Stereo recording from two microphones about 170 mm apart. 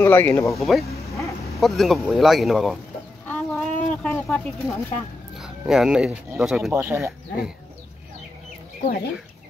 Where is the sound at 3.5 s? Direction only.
5° left (ahead or behind).